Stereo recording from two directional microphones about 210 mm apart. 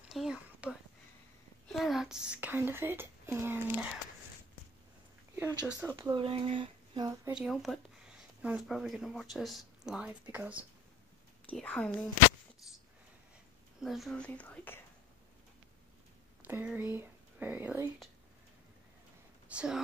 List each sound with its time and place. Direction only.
0.1 s a sound: centre (ahead or behind)
1.7 s a woman's voice: centre (ahead or behind)
5.7 s speech: 5° right (ahead or behind)
6.1 s a sound: 25° right (ahead or behind)
7.2 s speech: 5° right (ahead or behind)
11.4 s speech: 5° left (ahead or behind)
13.7 s speech: centre (ahead or behind)
16.4 s speech: 10° right (ahead or behind)
19.5 s speech: 5° right (ahead or behind)